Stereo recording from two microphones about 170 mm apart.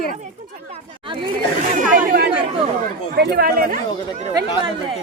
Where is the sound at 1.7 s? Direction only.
50° right (ahead or behind).